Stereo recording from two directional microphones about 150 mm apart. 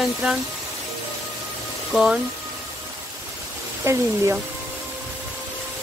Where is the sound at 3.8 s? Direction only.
20° right (ahead or behind).